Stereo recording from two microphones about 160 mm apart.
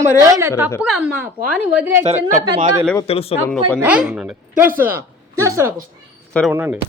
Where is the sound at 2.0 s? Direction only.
45° right (ahead or behind).